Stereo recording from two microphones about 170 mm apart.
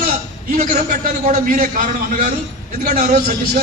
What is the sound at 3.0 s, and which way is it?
Speech, 50° right (ahead or behind).